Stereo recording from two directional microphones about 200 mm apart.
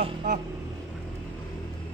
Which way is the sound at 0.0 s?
40° right (ahead or behind).